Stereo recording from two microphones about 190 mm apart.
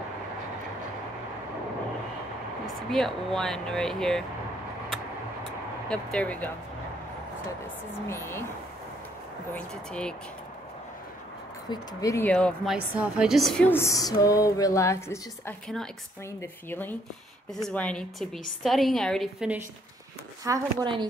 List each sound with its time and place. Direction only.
2.6 s speech: centre (ahead or behind)
5.9 s a woman's voice: 5° left (ahead or behind)
8.1 s a woman's voice: 15° left (ahead or behind)
9.5 s a woman's voice: 5° left (ahead or behind)
11.7 s a woman's voice: 15° left (ahead or behind)
12.7 s a woman's voice: 5° right (ahead or behind)
20.4 s a woman's voice: 20° right (ahead or behind)